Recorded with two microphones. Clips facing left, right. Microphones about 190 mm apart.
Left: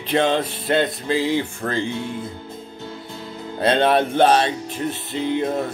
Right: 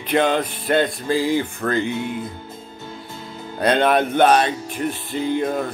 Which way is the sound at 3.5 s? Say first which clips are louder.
Even; 25° left (ahead or behind).